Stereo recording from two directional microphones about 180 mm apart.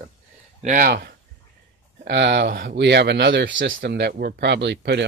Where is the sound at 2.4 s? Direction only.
55° right (ahead or behind); by 3.7 s 90° right.